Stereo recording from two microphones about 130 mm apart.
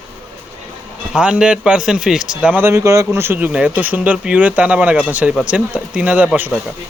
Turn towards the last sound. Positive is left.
turn(degrees=-10)  # may be behind; listen again after turning